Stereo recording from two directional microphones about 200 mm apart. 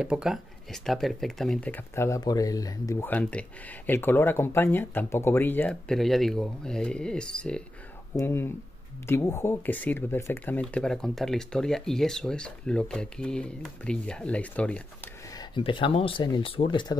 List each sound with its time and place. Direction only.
0.0 s speech: 5° right (ahead or behind)
15.3 s speech: 25° left (ahead or behind)